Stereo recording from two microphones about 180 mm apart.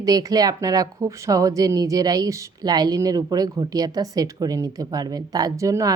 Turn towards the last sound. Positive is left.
turn(degrees=-15)  # may be behind; listen again after turning